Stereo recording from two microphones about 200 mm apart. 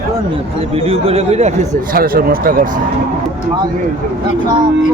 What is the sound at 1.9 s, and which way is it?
Speech, 45° right (ahead or behind).